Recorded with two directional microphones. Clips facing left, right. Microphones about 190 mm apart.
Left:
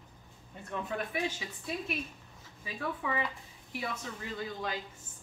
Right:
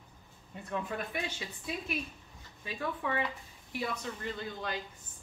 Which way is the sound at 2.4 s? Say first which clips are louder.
Even; centre (ahead or behind).